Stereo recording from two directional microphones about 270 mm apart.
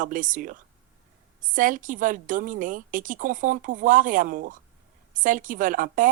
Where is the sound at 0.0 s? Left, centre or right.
Right.